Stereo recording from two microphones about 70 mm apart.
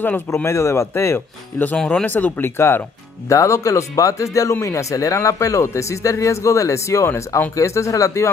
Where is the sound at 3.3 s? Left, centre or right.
Left.